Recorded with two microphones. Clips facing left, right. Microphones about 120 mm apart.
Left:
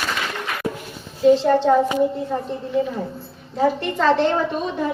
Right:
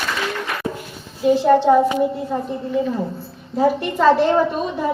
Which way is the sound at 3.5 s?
10° right (ahead or behind).